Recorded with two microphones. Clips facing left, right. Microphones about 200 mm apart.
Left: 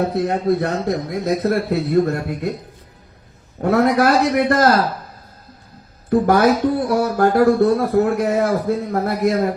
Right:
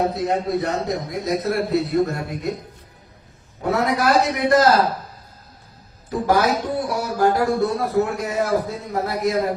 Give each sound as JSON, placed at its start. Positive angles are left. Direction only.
{"t": 0.1, "sound": "speech", "side_deg": 55}
{"t": 3.6, "sound": "speech", "side_deg": 55}
{"t": 6.1, "sound": "speech", "side_deg": 55}